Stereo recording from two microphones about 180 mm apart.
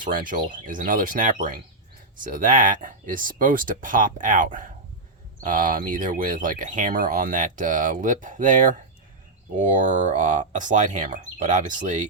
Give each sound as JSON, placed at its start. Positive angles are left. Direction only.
{"t": 0.0, "sound": "speech", "side_deg": -50}